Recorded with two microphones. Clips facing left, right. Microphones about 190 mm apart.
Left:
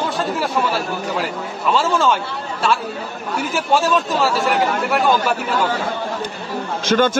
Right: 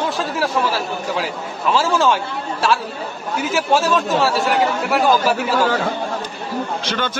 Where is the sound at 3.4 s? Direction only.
Centre (ahead or behind).